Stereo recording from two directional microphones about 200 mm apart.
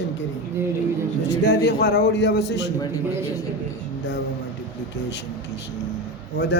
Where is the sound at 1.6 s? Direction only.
55° left (ahead or behind).